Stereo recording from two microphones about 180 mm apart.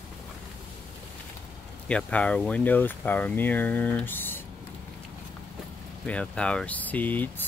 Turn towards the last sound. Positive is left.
turn(degrees=10)  # may be behind; listen again after turning